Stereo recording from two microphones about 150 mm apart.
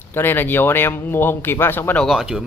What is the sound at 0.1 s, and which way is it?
Speech, 15° left (ahead or behind).